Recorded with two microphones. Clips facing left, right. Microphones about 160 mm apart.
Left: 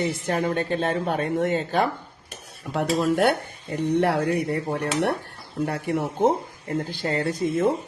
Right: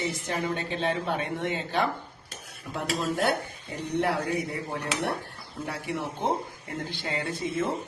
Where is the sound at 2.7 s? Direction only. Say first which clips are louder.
Left 7 dB; 65° left (ahead or behind).